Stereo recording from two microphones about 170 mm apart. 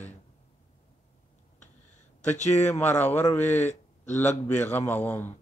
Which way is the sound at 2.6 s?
15° left (ahead or behind).